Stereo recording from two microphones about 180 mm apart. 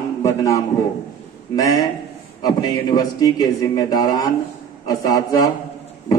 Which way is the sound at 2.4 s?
20° left (ahead or behind).